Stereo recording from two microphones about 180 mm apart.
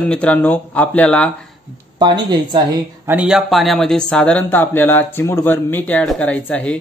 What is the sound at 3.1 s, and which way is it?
Speech, 5° right (ahead or behind).